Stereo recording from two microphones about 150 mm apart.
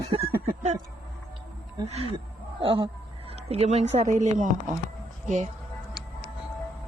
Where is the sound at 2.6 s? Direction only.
35° right (ahead or behind); by 5.5 s 55° right (ahead or behind).